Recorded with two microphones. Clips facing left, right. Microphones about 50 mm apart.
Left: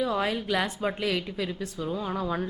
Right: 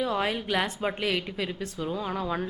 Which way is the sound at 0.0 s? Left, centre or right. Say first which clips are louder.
Even; centre.